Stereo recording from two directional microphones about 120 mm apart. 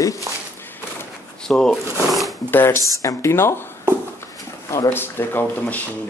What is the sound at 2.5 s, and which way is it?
Speech, 15° left (ahead or behind).